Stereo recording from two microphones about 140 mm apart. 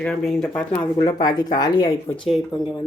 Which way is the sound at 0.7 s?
25° left (ahead or behind).